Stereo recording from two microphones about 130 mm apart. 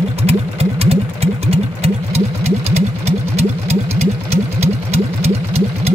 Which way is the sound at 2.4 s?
55° right (ahead or behind).